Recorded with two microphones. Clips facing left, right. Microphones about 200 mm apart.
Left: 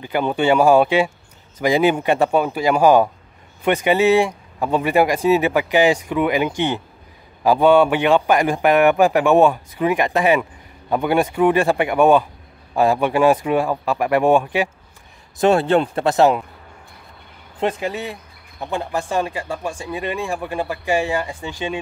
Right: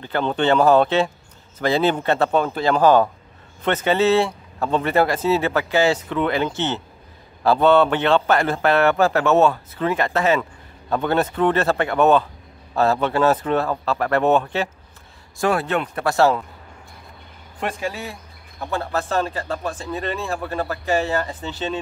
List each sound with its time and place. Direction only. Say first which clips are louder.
0.0 s speech: left 2 dB; 10° left (ahead or behind)
15.3 s speech: left 6 dB; 25° left (ahead or behind)
17.6 s speech: left 4 dB; 20° left (ahead or behind)